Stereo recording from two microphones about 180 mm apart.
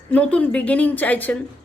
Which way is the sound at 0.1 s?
10° left (ahead or behind).